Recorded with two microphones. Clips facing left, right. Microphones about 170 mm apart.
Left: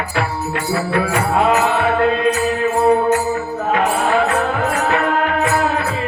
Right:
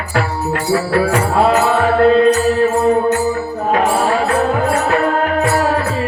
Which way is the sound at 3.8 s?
35° right (ahead or behind).